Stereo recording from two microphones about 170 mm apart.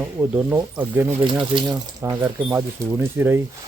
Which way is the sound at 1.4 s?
30° right (ahead or behind).